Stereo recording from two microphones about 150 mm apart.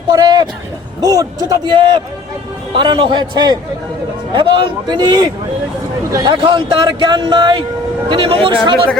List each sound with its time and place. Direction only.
0.1 s a sound: 25° right (ahead or behind)
1.0 s a man's voice: 25° right (ahead or behind)
6.3 s speech: 35° right (ahead or behind)